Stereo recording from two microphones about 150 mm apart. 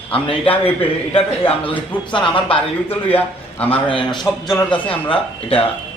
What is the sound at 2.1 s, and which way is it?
A man's voice, 35° left (ahead or behind).